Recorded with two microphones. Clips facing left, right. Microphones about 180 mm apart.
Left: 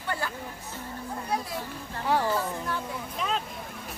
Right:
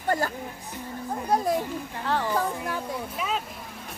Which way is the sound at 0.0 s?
40° right (ahead or behind).